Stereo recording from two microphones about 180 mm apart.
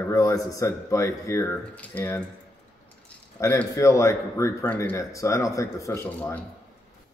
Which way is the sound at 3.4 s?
15° left (ahead or behind).